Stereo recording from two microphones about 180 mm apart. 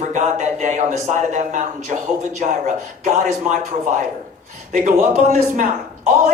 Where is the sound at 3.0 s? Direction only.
45° right (ahead or behind).